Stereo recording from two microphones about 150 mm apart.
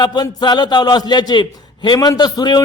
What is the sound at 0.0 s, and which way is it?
A man's voice, 30° left (ahead or behind).